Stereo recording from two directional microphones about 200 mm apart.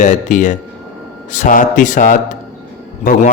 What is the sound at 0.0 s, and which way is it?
A man's voice, 40° left (ahead or behind).